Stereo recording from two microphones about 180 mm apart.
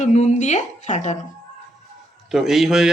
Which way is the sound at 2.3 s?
Centre (ahead or behind).